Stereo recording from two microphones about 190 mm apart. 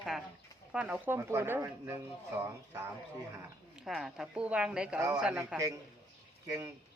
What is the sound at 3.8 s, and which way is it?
Speech, centre (ahead or behind).